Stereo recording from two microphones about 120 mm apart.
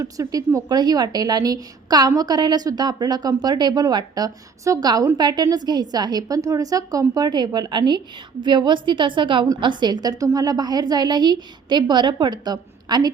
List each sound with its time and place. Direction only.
0.0 s speech: 30° right (ahead or behind)